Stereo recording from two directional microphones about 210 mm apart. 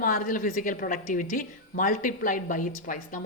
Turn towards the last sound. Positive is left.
turn(degrees=40)  # may be behind; listen again after turning